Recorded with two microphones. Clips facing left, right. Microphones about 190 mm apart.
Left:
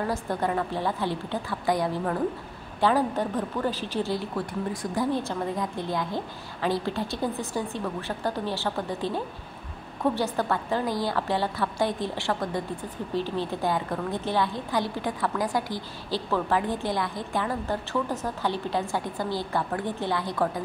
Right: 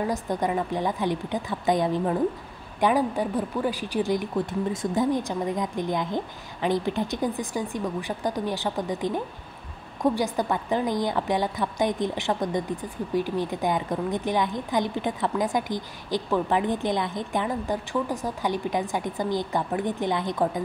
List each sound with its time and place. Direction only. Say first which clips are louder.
0.0 s a woman's voice: right 1 dB; 15° right (ahead or behind)